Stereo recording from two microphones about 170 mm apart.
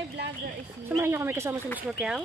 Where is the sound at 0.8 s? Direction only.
15° right (ahead or behind).